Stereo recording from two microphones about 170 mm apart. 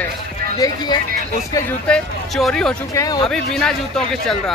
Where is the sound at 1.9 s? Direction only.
Centre (ahead or behind).